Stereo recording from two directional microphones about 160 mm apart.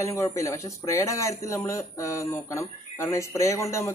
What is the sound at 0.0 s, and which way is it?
Speech, 20° left (ahead or behind).